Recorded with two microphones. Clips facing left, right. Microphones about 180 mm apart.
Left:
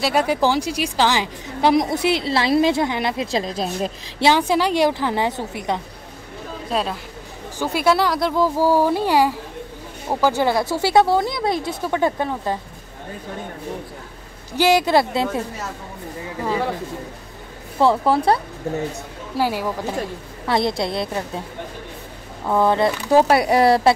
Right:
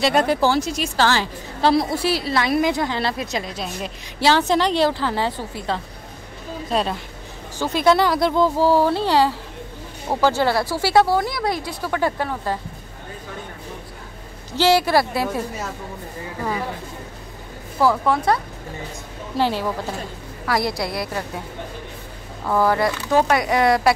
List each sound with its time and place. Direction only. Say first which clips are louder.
0.0 s a woman's voice: right 1 dB; 10° left (ahead or behind)
3.3 s speech: left 4 dB; 30° left (ahead or behind)
4.2 s a woman's voice: left 1 dB; 10° left (ahead or behind)
6.7 s a woman's voice: right 1 dB; centre (ahead or behind); by 12.5 s 20° left (ahead or behind)
14.6 s speech: left 1 dB; 15° left (ahead or behind)
17.7 s speech: left 2 dB; 30° left (ahead or behind)
19.3 s a woman's voice: even; 10° left (ahead or behind)
20.4 s speech: left 2 dB; 25° left (ahead or behind)
22.5 s speech: left 1 dB; 20° left (ahead or behind)
23.3 s speech: left 3 dB; 35° left (ahead or behind)